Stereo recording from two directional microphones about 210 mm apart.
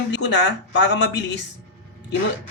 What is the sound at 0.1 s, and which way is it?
Speech, 55° left (ahead or behind).